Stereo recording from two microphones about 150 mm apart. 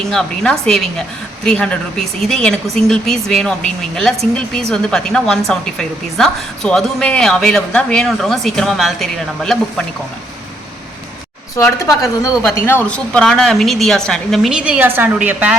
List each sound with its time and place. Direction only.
0.0 s speech: 5° left (ahead or behind)
11.5 s speech: 20° left (ahead or behind); by 15.5 s 10° right (ahead or behind)